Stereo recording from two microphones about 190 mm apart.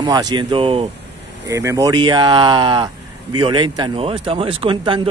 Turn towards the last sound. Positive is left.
turn(degrees=-25)  # may be behind; listen again after turning